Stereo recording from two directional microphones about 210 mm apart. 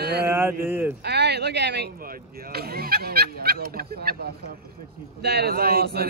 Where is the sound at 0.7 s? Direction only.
10° right (ahead or behind).